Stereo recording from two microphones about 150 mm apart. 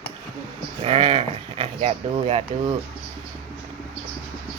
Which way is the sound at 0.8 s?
40° right (ahead or behind).